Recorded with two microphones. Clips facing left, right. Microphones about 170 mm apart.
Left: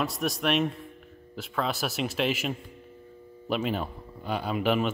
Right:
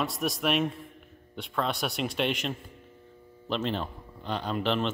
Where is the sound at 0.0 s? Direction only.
Centre (ahead or behind).